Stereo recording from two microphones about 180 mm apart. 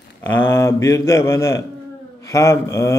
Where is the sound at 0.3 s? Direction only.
15° left (ahead or behind).